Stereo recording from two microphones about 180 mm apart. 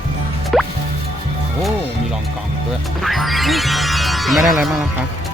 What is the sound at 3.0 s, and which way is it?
Speech, centre (ahead or behind).